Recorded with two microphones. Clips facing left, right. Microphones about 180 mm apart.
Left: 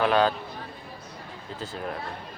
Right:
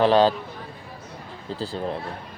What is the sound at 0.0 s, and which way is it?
Speech, 30° right (ahead or behind).